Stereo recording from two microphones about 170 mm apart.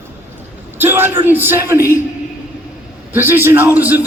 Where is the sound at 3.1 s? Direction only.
15° right (ahead or behind).